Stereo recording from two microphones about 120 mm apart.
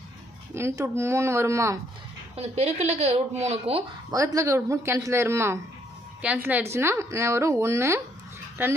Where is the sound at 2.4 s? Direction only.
65° right (ahead or behind).